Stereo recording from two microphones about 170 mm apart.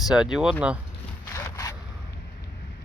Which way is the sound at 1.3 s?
20° left (ahead or behind).